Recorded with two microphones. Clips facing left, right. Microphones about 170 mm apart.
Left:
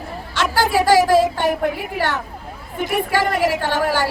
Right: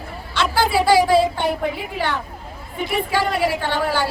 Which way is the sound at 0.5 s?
45° left (ahead or behind).